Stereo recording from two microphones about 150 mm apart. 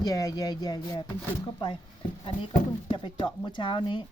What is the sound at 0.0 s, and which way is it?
Speech, 25° left (ahead or behind).